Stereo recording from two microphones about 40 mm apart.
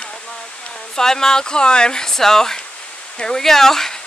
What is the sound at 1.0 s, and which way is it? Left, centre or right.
Speech, centre.